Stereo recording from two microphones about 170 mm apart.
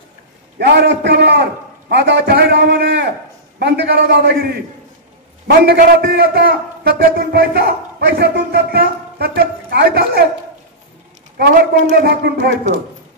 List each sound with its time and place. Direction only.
0.6 s a man's voice: 85° right; by 4.5 s 65° right (ahead or behind)
5.7 s a man's voice: 65° right (ahead or behind)
11.3 s a man's voice: 70° right (ahead or behind)